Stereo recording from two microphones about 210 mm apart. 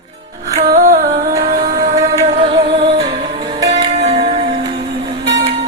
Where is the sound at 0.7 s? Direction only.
40° right (ahead or behind).